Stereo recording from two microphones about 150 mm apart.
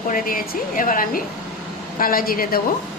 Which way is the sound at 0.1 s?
70° left (ahead or behind).